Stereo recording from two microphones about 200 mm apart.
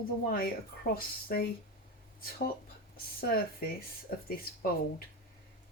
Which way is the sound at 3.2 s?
50° left (ahead or behind).